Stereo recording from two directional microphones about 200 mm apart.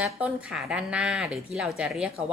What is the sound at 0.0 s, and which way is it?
Speech, 5° right (ahead or behind).